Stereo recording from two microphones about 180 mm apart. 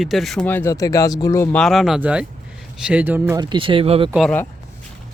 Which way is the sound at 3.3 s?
25° right (ahead or behind).